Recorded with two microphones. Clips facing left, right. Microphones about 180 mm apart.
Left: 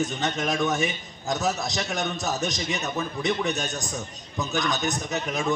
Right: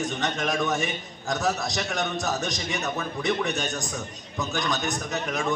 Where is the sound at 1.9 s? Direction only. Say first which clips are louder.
Right 1 dB; 5° left (ahead or behind).